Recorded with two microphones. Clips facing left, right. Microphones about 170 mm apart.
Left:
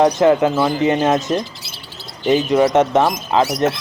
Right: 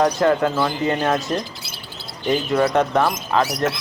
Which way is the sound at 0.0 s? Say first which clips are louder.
Left 4 dB; 20° left (ahead or behind).